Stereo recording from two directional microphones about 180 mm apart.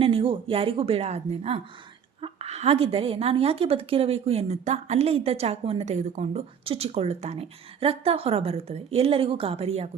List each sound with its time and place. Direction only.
0.0 s a woman's voice: 30° right (ahead or behind)